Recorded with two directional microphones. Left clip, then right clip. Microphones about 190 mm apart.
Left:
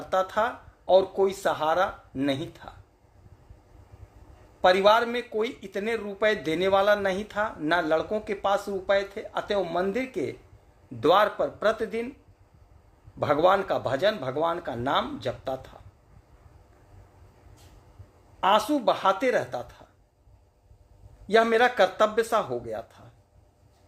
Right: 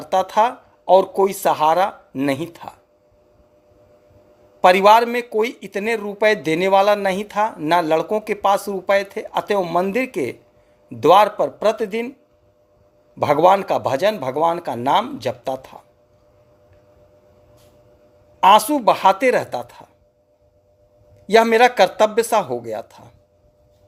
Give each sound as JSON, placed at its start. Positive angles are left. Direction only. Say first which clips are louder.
{"t": 0.1, "sound": "speech", "louder": "right 8 dB", "side_deg": -25}
{"t": 4.6, "sound": "speech", "louder": "right 8 dB", "side_deg": -30}
{"t": 13.1, "sound": "speech", "louder": "right 8 dB", "side_deg": -25}
{"t": 18.3, "sound": "speech", "louder": "right 10 dB", "side_deg": -30}
{"t": 21.2, "sound": "speech", "louder": "right 8 dB", "side_deg": -25}